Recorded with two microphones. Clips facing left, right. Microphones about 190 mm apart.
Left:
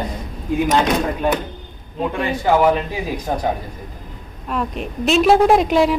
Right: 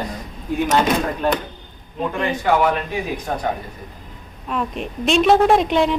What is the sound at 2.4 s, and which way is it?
A man's voice, 25° left (ahead or behind).